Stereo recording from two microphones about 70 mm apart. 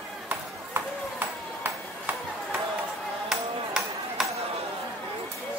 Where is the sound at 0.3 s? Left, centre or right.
Right.